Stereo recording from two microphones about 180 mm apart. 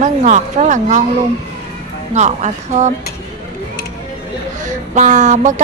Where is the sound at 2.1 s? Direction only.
40° right (ahead or behind).